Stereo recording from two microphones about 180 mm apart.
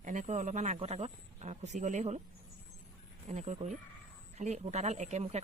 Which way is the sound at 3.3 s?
40° right (ahead or behind).